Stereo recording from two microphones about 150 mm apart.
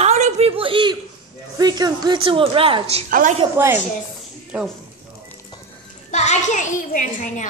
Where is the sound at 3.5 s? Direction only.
15° right (ahead or behind).